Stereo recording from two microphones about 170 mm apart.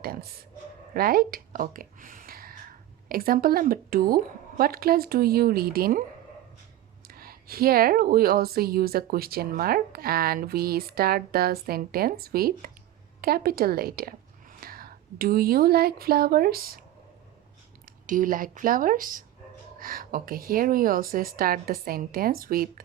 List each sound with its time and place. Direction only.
0.0 s a woman's voice: 65° right (ahead or behind)
7.1 s a woman's voice: 60° right (ahead or behind)
18.0 s a woman's voice: 50° right (ahead or behind)